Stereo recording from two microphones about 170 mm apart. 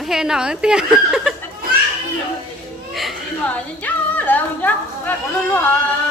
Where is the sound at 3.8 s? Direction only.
10° left (ahead or behind).